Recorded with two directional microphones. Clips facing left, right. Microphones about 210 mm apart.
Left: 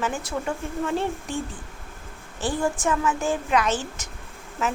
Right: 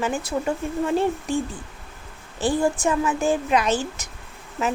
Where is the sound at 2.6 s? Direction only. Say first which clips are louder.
Right 1 dB; 20° right (ahead or behind).